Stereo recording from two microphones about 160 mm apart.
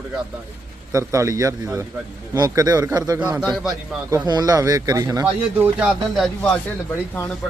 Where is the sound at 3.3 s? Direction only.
Centre (ahead or behind).